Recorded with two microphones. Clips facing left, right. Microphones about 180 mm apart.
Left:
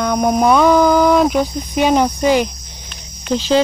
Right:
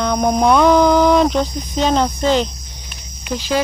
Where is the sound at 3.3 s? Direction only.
25° left (ahead or behind).